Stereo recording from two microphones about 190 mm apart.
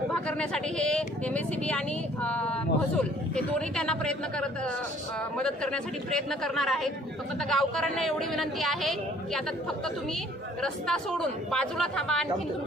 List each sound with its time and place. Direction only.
0.1 s a man's voice: 5° left (ahead or behind)
10.6 s a man's voice: 5° left (ahead or behind)